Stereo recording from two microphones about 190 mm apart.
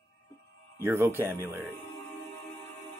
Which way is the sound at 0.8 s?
10° right (ahead or behind).